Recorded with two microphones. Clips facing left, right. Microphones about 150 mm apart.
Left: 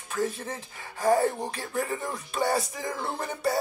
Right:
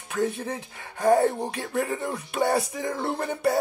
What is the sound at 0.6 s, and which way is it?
Speech, 60° right (ahead or behind).